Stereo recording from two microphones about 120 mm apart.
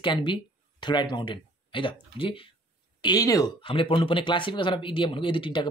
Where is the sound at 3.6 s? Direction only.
45° left (ahead or behind).